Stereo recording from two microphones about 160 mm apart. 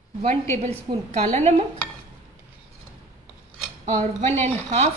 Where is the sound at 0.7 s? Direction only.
35° right (ahead or behind).